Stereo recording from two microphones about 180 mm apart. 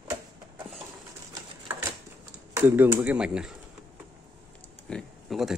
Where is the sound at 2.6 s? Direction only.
10° right (ahead or behind).